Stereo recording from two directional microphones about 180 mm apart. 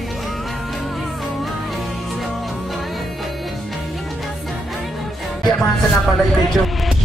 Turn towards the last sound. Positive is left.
turn(degrees=0)  # may be behind; listen again after turning